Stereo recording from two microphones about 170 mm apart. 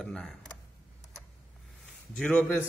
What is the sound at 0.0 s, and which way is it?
Speech, 5° left (ahead or behind).